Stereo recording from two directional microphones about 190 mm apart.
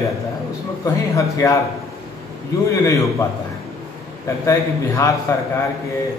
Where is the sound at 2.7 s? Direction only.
15° left (ahead or behind).